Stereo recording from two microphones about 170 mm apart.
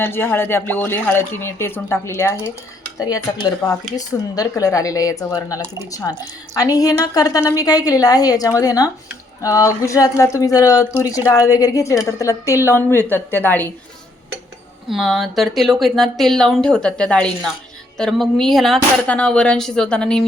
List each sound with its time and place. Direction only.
0.0 s speech: 10° left (ahead or behind)
14.8 s speech: centre (ahead or behind)